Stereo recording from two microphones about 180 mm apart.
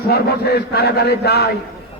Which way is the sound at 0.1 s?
60° left (ahead or behind).